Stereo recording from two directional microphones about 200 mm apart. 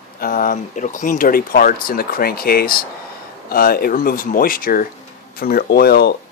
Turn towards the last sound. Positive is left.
turn(degrees=50)  # may be behind; listen again after turning